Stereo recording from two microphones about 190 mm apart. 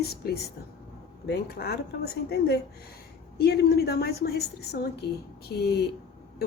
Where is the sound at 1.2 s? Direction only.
60° left (ahead or behind).